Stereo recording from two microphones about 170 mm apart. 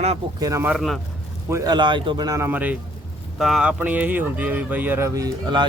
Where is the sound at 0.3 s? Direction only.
20° right (ahead or behind).